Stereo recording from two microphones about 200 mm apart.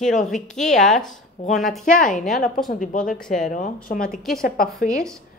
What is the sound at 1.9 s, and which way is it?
Speech, 40° left (ahead or behind).